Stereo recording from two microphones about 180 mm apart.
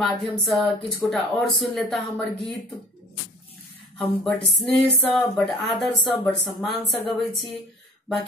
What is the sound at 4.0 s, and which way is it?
Speech, centre (ahead or behind).